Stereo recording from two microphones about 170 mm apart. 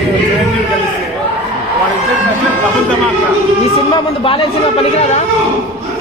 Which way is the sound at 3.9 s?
30° left (ahead or behind).